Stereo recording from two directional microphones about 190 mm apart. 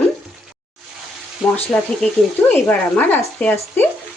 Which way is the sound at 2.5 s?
10° left (ahead or behind).